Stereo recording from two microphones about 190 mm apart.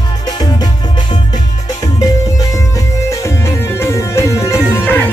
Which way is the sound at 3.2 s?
15° left (ahead or behind).